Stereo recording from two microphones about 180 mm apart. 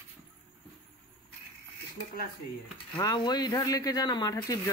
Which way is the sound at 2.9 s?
20° left (ahead or behind).